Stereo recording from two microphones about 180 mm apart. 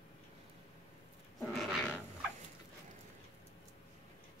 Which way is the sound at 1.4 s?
Centre (ahead or behind).